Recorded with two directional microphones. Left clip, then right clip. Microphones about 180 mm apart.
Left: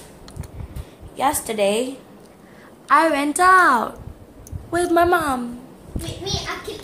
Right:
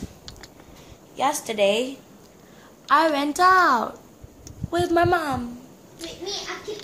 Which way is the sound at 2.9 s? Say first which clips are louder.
Left 3 dB; 10° right (ahead or behind).